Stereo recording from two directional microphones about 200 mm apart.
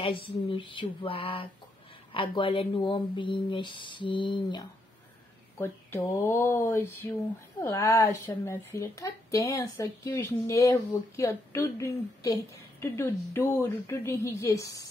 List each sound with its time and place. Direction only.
0.5 s speech: 25° left (ahead or behind)
5.6 s a woman's voice: 10° left (ahead or behind)